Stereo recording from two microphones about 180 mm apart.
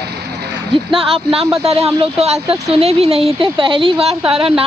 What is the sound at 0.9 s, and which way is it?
Speech, 30° right (ahead or behind).